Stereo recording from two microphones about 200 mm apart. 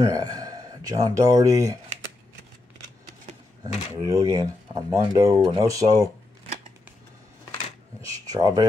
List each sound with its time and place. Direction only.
0.0 s speech: 20° right (ahead or behind)
3.6 s speech: 15° right (ahead or behind)
8.3 s speech: 20° right (ahead or behind)